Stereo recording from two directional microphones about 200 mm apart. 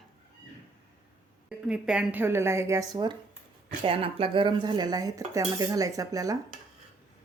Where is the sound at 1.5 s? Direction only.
5° right (ahead or behind).